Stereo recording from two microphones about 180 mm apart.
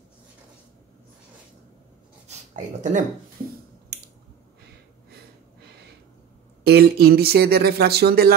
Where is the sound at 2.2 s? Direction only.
40° right (ahead or behind).